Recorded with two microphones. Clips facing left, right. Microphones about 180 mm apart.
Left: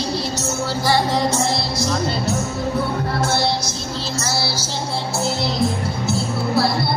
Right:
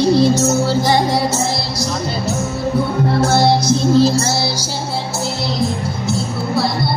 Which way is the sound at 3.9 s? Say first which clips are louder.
Right 15 dB; 40° right (ahead or behind).